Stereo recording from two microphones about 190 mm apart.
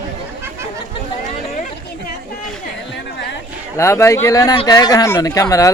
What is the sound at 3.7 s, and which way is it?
Speech, 15° left (ahead or behind).